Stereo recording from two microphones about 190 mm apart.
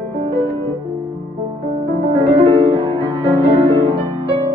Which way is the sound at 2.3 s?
30° right (ahead or behind).